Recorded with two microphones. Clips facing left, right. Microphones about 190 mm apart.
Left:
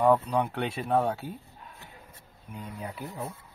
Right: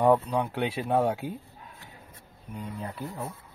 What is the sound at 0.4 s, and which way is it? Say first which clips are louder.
Speech: right 1 dB; 5° right (ahead or behind).